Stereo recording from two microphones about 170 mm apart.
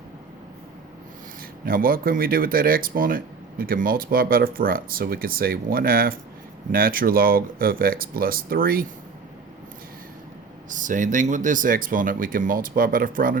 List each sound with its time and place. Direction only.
1.6 s speech: 60° right (ahead or behind)
10.7 s speech: 50° right (ahead or behind)